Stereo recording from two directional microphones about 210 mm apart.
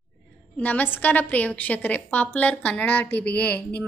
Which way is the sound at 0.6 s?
10° left (ahead or behind).